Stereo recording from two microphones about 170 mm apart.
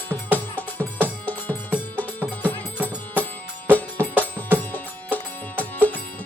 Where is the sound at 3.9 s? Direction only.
10° left (ahead or behind).